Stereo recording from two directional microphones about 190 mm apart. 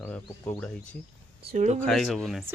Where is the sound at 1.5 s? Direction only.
40° right (ahead or behind).